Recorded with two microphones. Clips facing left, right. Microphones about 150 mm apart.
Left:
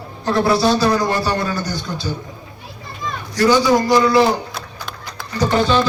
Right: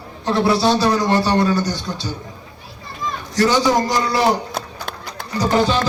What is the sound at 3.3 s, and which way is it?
Speech, 35° right (ahead or behind).